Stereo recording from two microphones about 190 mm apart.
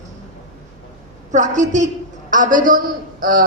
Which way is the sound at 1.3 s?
40° right (ahead or behind).